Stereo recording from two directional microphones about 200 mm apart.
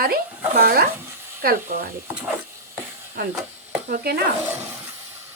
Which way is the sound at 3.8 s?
50° right (ahead or behind).